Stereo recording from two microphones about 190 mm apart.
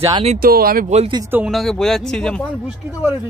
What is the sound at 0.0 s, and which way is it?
Speech, 30° right (ahead or behind).